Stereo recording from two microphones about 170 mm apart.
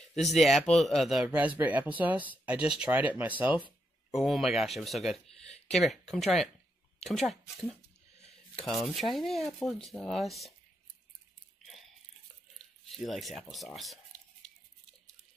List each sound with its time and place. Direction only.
0.1 s speech: centre (ahead or behind)
12.9 s speech: centre (ahead or behind)